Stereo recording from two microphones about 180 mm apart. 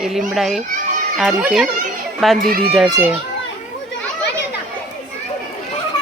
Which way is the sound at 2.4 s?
55° right (ahead or behind).